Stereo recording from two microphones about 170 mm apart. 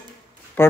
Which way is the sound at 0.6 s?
10° left (ahead or behind).